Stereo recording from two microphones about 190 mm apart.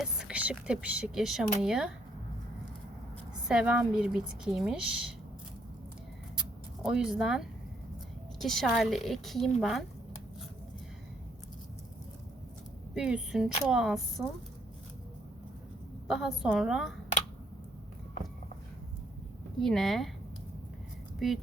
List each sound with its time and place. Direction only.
0.0 s speech: 5° right (ahead or behind)
3.5 s speech: 5° right (ahead or behind)
6.8 s speech: 5° right (ahead or behind)
12.9 s speech: 5° right (ahead or behind)
16.0 s speech: 5° right (ahead or behind)
19.5 s speech: centre (ahead or behind)